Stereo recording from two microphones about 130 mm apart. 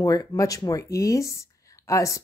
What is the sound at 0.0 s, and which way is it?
Speech, 30° left (ahead or behind).